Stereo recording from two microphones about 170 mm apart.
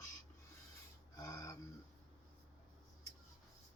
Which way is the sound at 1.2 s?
20° left (ahead or behind).